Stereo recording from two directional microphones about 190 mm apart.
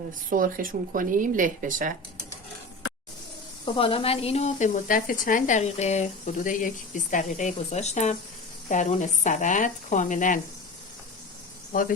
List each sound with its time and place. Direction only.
0.3 s speech: 45° right (ahead or behind)
3.8 s speech: 30° left (ahead or behind)
11.7 s speech: 45° left (ahead or behind)